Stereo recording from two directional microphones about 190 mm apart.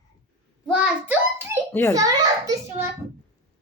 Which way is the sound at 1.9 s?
20° right (ahead or behind).